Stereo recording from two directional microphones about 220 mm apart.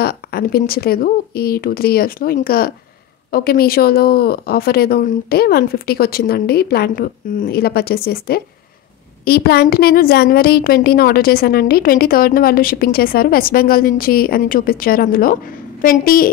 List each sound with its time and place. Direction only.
0.0 s a woman's voice: 45° left (ahead or behind)